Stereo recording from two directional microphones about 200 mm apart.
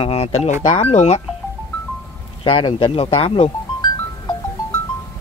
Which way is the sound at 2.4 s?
25° left (ahead or behind).